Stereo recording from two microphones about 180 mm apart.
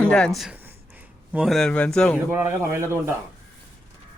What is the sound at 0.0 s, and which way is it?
Speech, 5° left (ahead or behind).